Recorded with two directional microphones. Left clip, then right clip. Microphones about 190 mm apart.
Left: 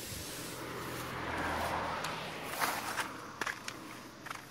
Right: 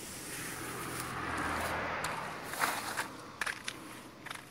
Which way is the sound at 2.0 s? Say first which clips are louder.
Right 1 dB; 20° right (ahead or behind).